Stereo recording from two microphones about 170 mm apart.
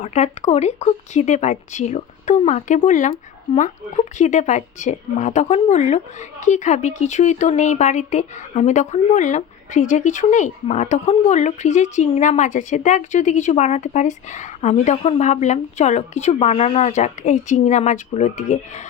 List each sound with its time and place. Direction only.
0.0 s speech: 45° left (ahead or behind)